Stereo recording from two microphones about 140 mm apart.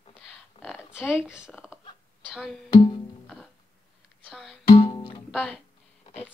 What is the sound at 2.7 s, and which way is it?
Music, 35° left (ahead or behind).